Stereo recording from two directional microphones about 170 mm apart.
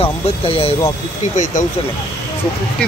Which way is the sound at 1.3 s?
45° left (ahead or behind).